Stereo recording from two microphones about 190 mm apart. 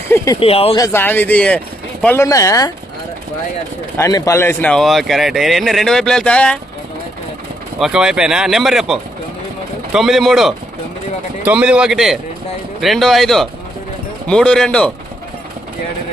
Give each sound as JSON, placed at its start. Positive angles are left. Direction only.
{"t": 0.3, "sound": "speech", "side_deg": 30}
{"t": 0.8, "sound": "speech", "side_deg": 10}
{"t": 3.9, "sound": "a man's voice", "side_deg": 15}
{"t": 7.8, "sound": "a man's voice", "side_deg": -5}